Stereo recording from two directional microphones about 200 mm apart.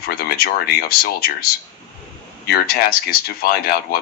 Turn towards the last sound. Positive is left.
turn(degrees=50)  # may be behind; listen again after turning